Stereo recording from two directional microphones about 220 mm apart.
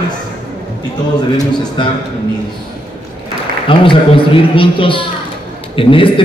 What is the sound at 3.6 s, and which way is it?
A woman's voice, 25° left (ahead or behind).